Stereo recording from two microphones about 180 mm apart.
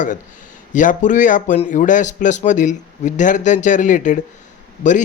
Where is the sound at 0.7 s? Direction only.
45° left (ahead or behind).